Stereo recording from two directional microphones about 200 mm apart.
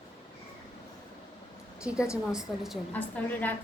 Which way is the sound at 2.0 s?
15° left (ahead or behind).